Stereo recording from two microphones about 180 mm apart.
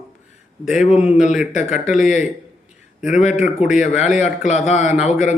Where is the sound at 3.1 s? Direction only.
40° left (ahead or behind).